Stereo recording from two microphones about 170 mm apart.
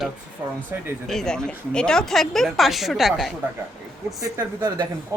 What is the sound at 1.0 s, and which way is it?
A woman's voice, centre (ahead or behind).